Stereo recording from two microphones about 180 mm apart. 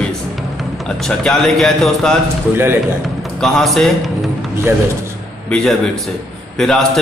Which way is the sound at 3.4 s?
Centre (ahead or behind).